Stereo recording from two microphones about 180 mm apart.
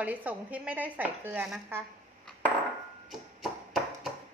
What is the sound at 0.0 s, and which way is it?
Speech, 10° right (ahead or behind).